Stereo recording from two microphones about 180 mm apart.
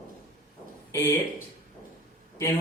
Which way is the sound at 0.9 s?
15° left (ahead or behind).